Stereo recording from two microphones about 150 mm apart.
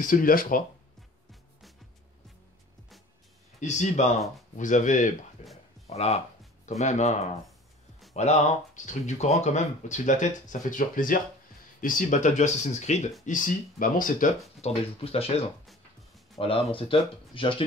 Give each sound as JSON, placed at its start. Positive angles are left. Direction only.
{"t": 0.0, "sound": "speech", "side_deg": 65}
{"t": 3.5, "sound": "speech", "side_deg": 50}
{"t": 13.2, "sound": "speech", "side_deg": 60}
{"t": 14.6, "sound": "speech", "side_deg": 45}